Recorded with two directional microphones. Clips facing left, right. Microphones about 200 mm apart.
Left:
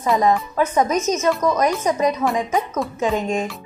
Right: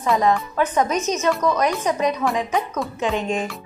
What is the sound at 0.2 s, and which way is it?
Speech, 10° left (ahead or behind).